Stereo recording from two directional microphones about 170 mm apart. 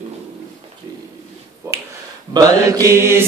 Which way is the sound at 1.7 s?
20° right (ahead or behind).